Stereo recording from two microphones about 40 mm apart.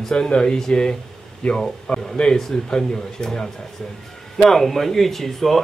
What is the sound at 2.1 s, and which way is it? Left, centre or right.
Speech, left.